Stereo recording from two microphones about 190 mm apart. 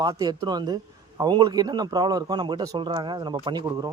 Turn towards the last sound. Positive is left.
turn(degrees=-20)  # may be behind; listen again after turning